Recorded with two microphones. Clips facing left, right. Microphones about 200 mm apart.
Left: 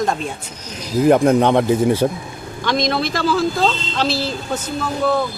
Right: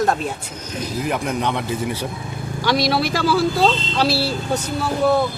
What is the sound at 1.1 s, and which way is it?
Speech, 50° left (ahead or behind).